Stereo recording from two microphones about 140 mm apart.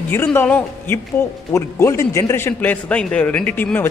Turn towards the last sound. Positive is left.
turn(degrees=15)  # may be behind; listen again after turning